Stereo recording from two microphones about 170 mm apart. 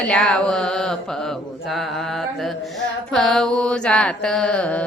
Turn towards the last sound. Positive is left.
turn(degrees=5)  # may be behind; listen again after turning